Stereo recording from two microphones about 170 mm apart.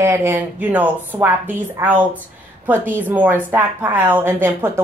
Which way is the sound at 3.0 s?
10° right (ahead or behind).